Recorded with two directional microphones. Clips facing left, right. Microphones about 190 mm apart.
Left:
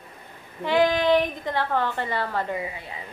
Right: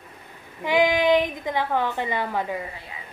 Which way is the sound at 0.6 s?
15° right (ahead or behind).